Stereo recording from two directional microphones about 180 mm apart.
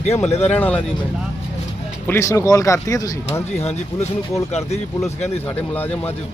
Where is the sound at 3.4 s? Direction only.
35° left (ahead or behind).